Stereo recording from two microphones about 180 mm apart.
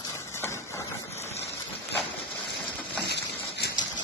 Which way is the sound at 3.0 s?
70° left (ahead or behind).